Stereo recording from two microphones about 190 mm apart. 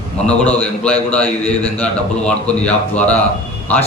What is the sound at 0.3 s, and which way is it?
A man's voice, 5° left (ahead or behind).